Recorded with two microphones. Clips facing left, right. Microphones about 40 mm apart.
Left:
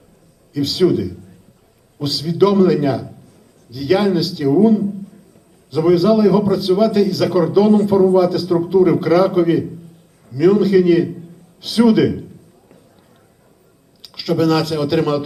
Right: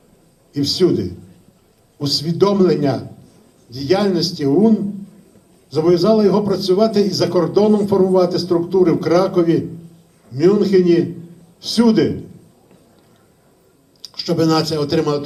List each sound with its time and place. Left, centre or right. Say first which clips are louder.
0.5 s a man's voice: even; left
14.0 s speech: even; left